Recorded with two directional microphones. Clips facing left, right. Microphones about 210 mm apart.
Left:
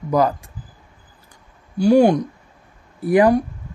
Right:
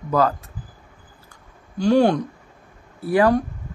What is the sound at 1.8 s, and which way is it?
Speech, 10° left (ahead or behind).